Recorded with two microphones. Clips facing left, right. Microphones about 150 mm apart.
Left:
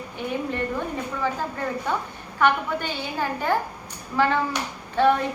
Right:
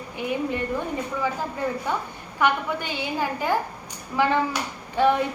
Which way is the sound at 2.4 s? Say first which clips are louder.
Left 1 dB; 15° right (ahead or behind).